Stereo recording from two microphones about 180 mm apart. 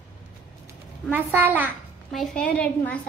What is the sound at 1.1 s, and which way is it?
Speech, 10° right (ahead or behind).